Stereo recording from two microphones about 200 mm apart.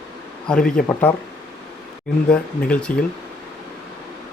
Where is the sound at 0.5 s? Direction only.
5° left (ahead or behind).